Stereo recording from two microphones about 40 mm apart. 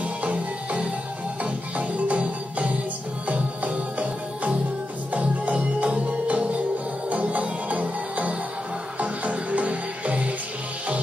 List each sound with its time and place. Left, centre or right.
0.0 s music: right